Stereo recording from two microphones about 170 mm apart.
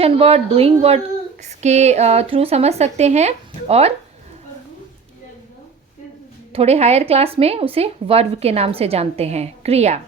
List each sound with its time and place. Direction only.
0.0 s speech: 35° right (ahead or behind)
6.5 s speech: 35° right (ahead or behind)